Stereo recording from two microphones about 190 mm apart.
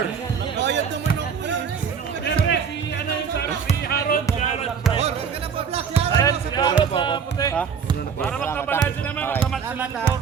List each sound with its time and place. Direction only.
0.5 s basketball bounce: 65° right (ahead or behind)
2.2 s music: 60° left (ahead or behind)
3.8 s basketball bounce: 55° left (ahead or behind)
6.1 s music: 20° left (ahead or behind)
8.2 s music: 10° left (ahead or behind)
9.1 s basketball bounce: 10° left (ahead or behind)